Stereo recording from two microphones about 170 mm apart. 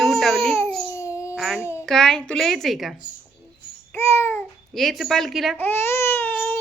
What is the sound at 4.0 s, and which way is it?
Babbling, 15° left (ahead or behind).